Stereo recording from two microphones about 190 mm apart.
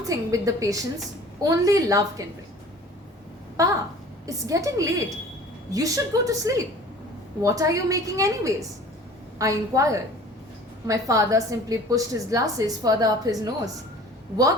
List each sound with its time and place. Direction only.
0.1 s a woman's voice: 15° right (ahead or behind)
3.6 s a woman's voice: 15° right (ahead or behind)